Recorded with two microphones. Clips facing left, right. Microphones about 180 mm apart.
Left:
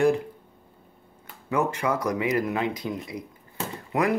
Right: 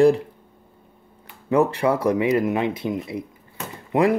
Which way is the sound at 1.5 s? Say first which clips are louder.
Right 6 dB; 35° right (ahead or behind).